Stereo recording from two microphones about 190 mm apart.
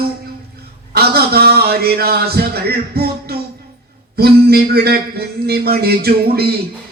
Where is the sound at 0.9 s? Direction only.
55° right (ahead or behind).